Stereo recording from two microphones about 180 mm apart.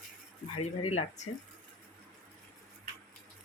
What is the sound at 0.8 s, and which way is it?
Speech, 35° left (ahead or behind).